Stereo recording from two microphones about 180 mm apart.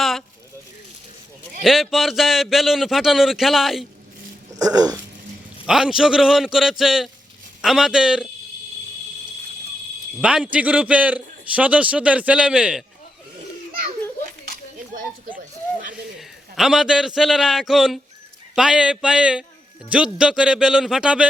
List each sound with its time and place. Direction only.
0.0 s a sound: centre (ahead or behind)
1.6 s speech: centre (ahead or behind)
4.5 s speech: 20° right (ahead or behind)
5.6 s speech: 5° right (ahead or behind)
10.2 s a man's voice: 5° right (ahead or behind)
16.1 s a man's voice: centre (ahead or behind)